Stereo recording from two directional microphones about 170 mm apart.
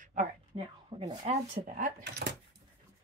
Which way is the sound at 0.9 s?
45° right (ahead or behind).